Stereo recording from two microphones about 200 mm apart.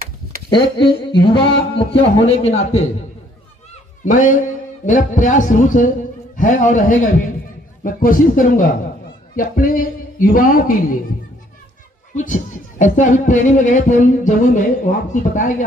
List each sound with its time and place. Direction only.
0.5 s speech: 25° left (ahead or behind)
4.0 s a man's voice: 40° left (ahead or behind)
12.2 s speech: 40° left (ahead or behind)